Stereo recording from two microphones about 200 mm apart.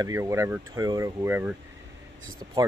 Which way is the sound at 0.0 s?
15° right (ahead or behind).